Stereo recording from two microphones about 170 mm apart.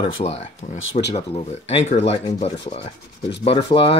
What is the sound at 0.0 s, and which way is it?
Speech, 35° left (ahead or behind).